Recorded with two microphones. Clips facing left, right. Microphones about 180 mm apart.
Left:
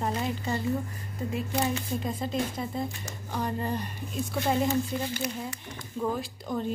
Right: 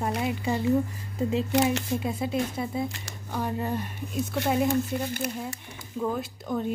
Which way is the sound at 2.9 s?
85° right.